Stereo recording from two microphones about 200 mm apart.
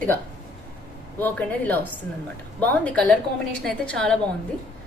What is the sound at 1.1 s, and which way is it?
Speech, 10° left (ahead or behind).